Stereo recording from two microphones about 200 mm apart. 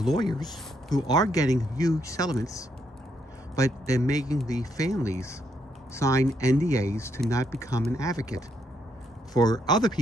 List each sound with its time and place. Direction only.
0.2 s speech: 20° left (ahead or behind)